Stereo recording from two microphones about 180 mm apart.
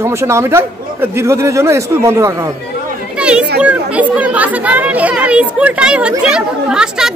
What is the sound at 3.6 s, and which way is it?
Speech, 5° right (ahead or behind).